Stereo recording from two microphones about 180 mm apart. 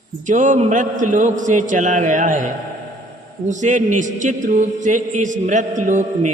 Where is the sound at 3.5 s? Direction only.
45° right (ahead or behind).